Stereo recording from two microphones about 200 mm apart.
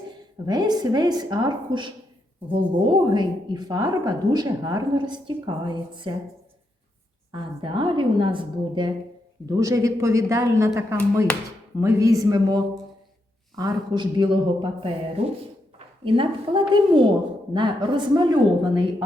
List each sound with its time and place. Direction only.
0.4 s a woman's voice: 20° right (ahead or behind)
7.3 s a woman's voice: 20° right (ahead or behind)